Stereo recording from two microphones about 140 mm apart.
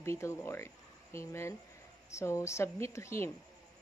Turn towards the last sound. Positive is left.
turn(degrees=20)  # may be behind; listen again after turning